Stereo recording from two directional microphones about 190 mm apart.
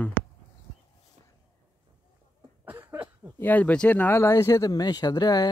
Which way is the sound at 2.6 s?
10° right (ahead or behind).